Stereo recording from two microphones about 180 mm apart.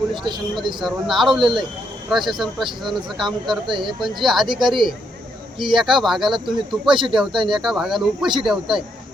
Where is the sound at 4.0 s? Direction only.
Centre (ahead or behind).